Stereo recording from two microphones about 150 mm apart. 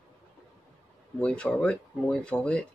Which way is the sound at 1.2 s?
5° left (ahead or behind).